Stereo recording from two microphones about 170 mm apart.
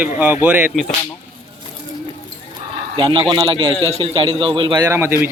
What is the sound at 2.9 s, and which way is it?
A man's voice, 25° right (ahead or behind).